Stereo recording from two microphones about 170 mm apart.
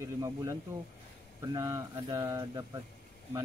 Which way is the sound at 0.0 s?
20° right (ahead or behind).